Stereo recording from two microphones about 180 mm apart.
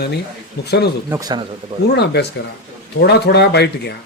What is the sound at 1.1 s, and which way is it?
Speech, 20° right (ahead or behind).